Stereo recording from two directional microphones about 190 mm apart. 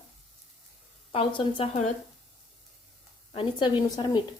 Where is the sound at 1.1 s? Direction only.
25° left (ahead or behind).